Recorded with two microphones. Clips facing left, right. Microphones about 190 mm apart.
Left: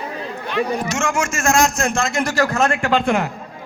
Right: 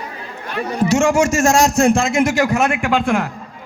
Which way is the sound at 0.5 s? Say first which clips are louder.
Right 4 dB; 35° right (ahead or behind).